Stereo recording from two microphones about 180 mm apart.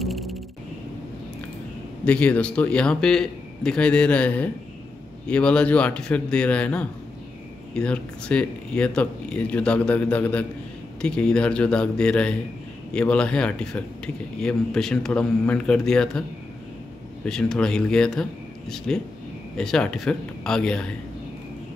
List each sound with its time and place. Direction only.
0.0 s a sound: centre (ahead or behind)
2.0 s speech: 5° left (ahead or behind)
17.3 s speech: 5° left (ahead or behind)